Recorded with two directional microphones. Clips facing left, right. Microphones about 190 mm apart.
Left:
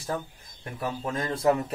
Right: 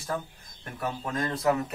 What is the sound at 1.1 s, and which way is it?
Speech, 25° left (ahead or behind).